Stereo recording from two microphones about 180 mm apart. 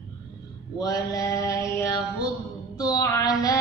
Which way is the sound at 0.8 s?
20° left (ahead or behind).